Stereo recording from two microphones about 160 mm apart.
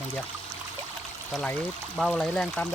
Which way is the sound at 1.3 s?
10° left (ahead or behind).